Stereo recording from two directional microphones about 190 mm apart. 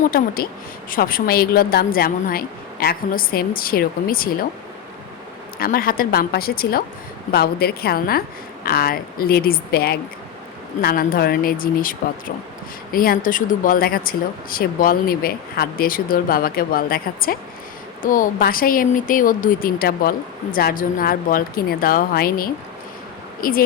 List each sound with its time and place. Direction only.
0.0 s a woman's voice: 50° left (ahead or behind)
5.5 s a woman's voice: 50° left (ahead or behind)